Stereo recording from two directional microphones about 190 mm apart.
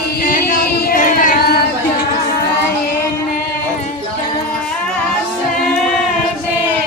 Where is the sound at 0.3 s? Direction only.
50° left (ahead or behind).